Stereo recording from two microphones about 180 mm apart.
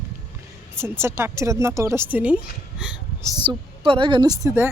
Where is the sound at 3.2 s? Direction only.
25° right (ahead or behind).